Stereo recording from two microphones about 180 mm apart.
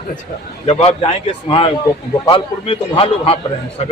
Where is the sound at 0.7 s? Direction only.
35° left (ahead or behind).